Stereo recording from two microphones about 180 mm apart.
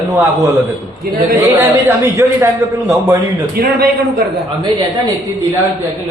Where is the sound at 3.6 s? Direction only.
60° right (ahead or behind).